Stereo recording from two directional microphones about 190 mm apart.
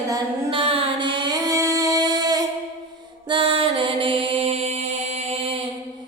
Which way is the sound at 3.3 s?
25° right (ahead or behind).